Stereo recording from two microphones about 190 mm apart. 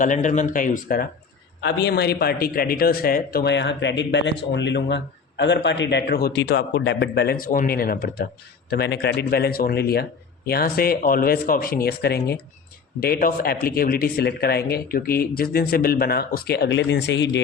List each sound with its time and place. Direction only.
0.0 s speech: 40° left (ahead or behind)
1.6 s a man's voice: 60° left (ahead or behind)